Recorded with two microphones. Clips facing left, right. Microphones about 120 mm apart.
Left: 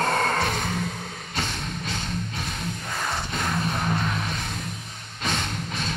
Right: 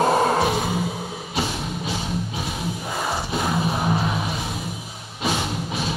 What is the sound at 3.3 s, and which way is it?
Music, 10° right (ahead or behind).